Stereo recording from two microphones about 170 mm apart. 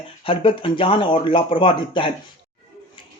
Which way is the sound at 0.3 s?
30° left (ahead or behind).